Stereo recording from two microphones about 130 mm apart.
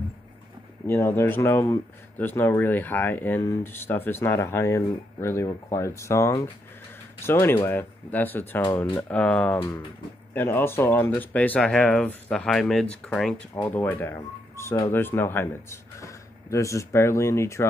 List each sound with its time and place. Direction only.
0.8 s speech: 15° left (ahead or behind)